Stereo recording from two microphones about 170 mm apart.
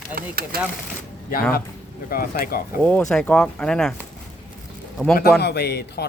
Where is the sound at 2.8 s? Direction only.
5° left (ahead or behind).